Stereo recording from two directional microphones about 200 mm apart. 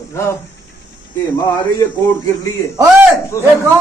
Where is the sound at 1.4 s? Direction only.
15° left (ahead or behind).